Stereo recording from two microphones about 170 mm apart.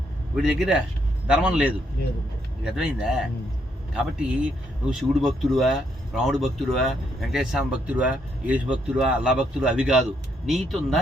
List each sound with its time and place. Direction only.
0.3 s speech: 5° right (ahead or behind)
2.7 s speech: 5° right (ahead or behind)
4.2 s speech: 5° right (ahead or behind)